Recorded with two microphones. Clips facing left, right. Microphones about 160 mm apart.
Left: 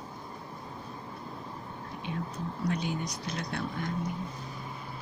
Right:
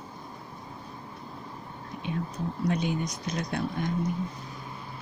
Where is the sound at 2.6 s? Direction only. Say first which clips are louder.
Right 4 dB; 20° right (ahead or behind).